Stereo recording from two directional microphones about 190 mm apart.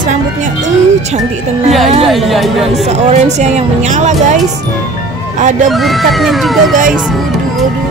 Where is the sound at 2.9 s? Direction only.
35° right (ahead or behind).